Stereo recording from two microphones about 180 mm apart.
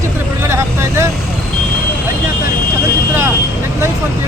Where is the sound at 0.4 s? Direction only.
15° right (ahead or behind).